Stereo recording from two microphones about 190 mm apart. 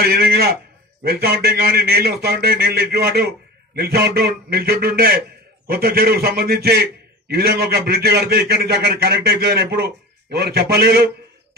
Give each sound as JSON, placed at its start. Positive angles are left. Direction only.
{"t": 0.0, "sound": "a man's voice", "side_deg": -55}